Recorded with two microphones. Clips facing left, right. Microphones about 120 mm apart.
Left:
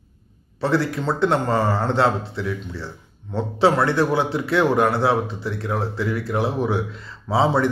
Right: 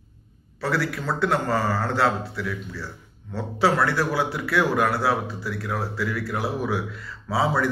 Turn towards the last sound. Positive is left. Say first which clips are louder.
# left 4 dB
turn(degrees=25)  # may be behind; listen again after turning